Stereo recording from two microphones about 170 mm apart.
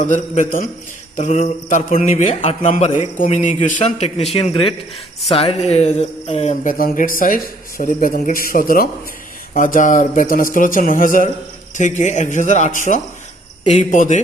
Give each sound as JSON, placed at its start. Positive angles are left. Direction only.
{"t": 0.1, "sound": "a man's voice", "side_deg": 50}